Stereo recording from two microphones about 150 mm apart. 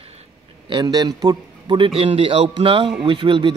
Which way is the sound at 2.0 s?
40° right (ahead or behind).